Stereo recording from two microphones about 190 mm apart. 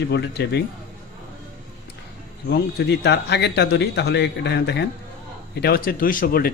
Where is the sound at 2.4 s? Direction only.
60° left (ahead or behind).